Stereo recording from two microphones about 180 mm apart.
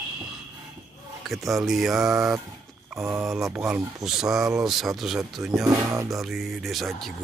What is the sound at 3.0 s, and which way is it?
Music, 15° right (ahead or behind).